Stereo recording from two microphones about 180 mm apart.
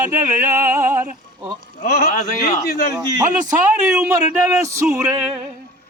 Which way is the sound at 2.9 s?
20° right (ahead or behind).